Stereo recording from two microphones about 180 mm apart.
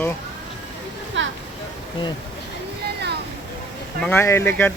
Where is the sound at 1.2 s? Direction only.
90° right.